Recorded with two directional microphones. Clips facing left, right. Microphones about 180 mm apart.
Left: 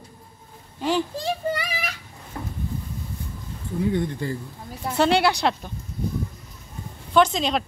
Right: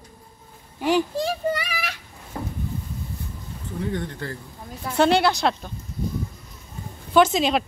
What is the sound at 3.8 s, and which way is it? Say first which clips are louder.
A woman's voice: left 5 dB; 15° left (ahead or behind).